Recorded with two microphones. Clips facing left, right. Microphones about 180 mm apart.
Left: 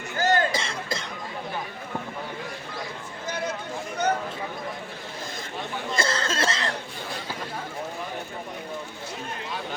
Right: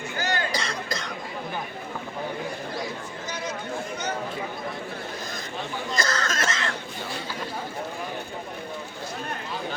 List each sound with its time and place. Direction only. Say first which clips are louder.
0.2 s cough: left 6 dB; 45° left (ahead or behind)
0.5 s cough: even; 25° left (ahead or behind)
6.0 s cough: left 2 dB; 30° left (ahead or behind)